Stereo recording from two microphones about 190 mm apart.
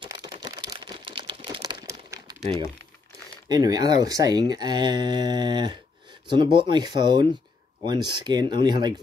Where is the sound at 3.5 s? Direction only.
20° right (ahead or behind).